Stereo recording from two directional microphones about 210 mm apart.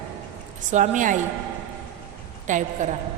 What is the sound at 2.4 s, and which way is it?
Speech, 35° right (ahead or behind).